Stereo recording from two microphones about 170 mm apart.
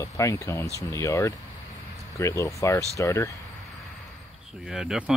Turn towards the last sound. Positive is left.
turn(degrees=-5)  # may be behind; listen again after turning